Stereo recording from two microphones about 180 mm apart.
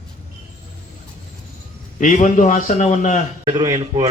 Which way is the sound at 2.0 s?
45° left (ahead or behind).